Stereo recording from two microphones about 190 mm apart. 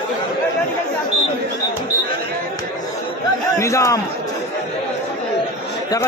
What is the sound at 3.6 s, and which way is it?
Speech, 15° left (ahead or behind).